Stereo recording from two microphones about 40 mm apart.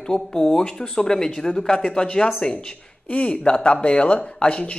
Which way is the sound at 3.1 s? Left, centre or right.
Left.